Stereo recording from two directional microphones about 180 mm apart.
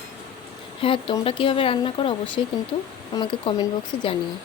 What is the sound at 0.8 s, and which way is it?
Speech, 30° left (ahead or behind).